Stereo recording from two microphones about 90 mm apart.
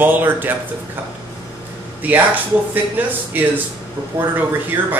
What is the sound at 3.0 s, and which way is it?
Speech, 20° right (ahead or behind).